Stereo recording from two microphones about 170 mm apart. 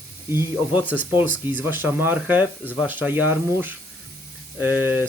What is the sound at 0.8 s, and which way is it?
Speech, 10° left (ahead or behind).